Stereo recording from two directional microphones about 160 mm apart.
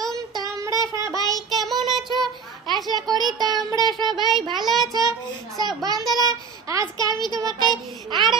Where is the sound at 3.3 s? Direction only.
25° right (ahead or behind).